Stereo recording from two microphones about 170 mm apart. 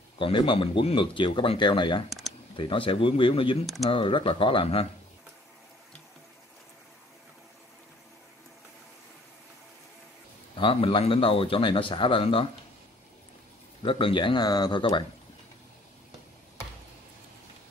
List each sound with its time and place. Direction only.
0.2 s speech: 30° left (ahead or behind)
2.0 s a sound: centre (ahead or behind)
2.5 s speech: 30° left (ahead or behind)
3.6 s speech: centre (ahead or behind)
3.9 s speech: 30° left (ahead or behind)
10.5 s speech: 30° left (ahead or behind)
13.8 s speech: 30° left (ahead or behind)